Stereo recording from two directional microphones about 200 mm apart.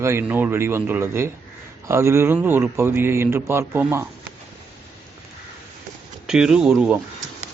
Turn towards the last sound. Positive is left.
turn(degrees=-5)  # may be behind; listen again after turning